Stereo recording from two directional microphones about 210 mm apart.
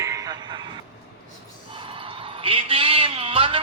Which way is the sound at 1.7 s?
25° right (ahead or behind).